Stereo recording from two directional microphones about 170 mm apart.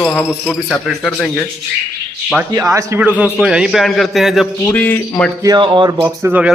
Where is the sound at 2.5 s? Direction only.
15° right (ahead or behind); by 4.5 s centre (ahead or behind).